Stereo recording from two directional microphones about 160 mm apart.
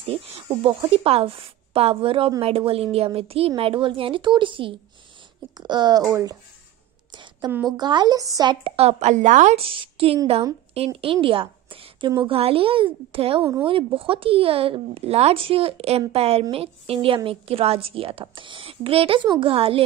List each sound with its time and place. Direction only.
0.0 s a woman's voice: 35° right (ahead or behind); by 6.3 s 20° right (ahead or behind)
7.1 s a sound: 30° right (ahead or behind)
7.7 s a woman's voice: 25° right (ahead or behind)
13.4 s speech: 20° right (ahead or behind)
13.7 s a woman's voice: 35° right (ahead or behind)